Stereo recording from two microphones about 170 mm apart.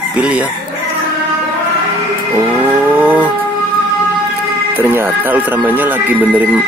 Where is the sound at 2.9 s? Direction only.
10° right (ahead or behind).